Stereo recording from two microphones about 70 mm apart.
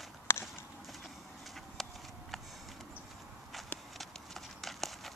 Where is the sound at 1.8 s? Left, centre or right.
Centre.